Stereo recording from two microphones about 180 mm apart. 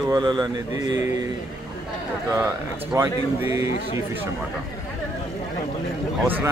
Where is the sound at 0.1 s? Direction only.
25° right (ahead or behind).